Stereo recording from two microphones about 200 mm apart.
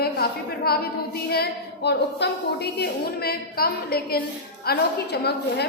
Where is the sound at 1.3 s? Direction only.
55° left (ahead or behind).